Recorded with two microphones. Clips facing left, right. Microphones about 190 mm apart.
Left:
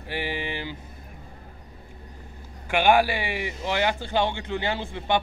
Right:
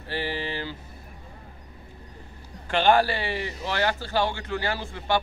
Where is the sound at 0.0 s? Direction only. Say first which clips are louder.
Even; 15° left (ahead or behind).